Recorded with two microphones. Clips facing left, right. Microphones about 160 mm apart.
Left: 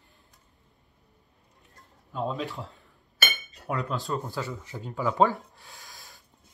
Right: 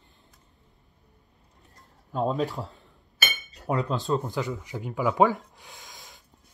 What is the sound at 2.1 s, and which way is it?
Speech, 40° right (ahead or behind).